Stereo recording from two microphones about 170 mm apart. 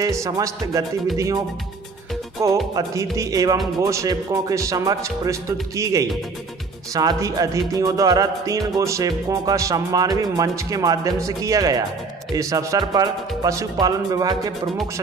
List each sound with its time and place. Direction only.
0.0 s music: 20° right (ahead or behind)